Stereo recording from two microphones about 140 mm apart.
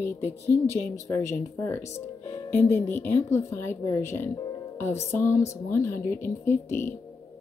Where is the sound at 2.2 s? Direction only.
15° left (ahead or behind).